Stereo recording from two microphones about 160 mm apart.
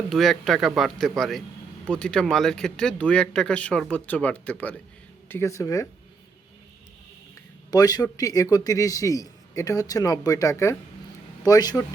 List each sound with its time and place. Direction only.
0.1 s a man's voice: centre (ahead or behind); by 5.9 s 20° left (ahead or behind)
7.7 s a man's voice: 25° left (ahead or behind)